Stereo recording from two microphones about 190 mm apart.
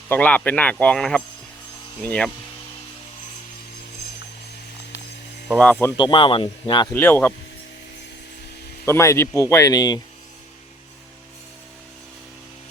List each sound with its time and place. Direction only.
0.1 s speech: 10° left (ahead or behind)
5.8 s speech: 25° left (ahead or behind)
6.9 s speech: 10° left (ahead or behind)
8.9 s speech: 15° left (ahead or behind)